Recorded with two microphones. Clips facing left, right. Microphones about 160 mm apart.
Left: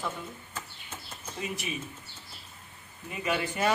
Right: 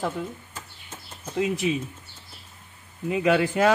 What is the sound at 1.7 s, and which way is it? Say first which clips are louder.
Speech: right 11 dB; 90° right.